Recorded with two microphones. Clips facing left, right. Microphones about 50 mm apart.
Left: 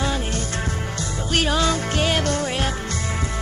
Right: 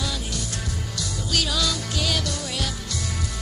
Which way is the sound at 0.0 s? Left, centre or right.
Left.